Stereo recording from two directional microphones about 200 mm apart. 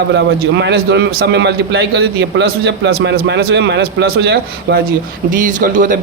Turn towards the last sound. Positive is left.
turn(degrees=-40)  # may be behind; listen again after turning